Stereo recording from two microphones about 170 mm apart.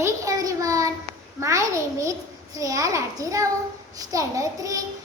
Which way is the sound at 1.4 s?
20° right (ahead or behind).